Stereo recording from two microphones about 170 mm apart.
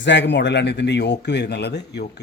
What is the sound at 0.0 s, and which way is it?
A man's voice, 90° left.